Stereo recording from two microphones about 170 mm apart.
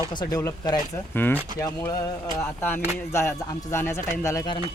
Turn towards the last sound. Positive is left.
turn(degrees=20)  # may be behind; listen again after turning